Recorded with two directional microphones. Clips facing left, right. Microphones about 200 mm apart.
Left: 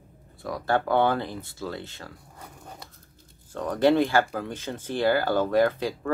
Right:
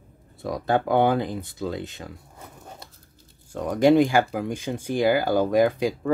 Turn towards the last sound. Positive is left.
turn(degrees=-15)  # may be behind; listen again after turning